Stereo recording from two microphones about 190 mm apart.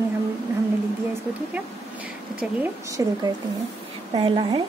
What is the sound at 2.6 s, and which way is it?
Speech, 15° right (ahead or behind).